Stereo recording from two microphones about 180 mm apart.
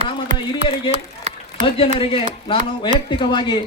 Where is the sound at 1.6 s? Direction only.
30° left (ahead or behind).